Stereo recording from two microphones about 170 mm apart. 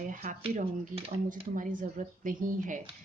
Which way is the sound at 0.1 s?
50° right (ahead or behind).